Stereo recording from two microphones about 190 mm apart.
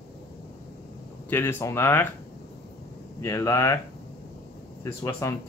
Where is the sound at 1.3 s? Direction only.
10° left (ahead or behind).